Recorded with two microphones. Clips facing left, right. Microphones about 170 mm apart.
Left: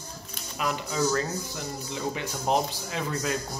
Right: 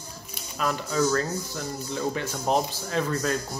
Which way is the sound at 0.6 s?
15° left (ahead or behind).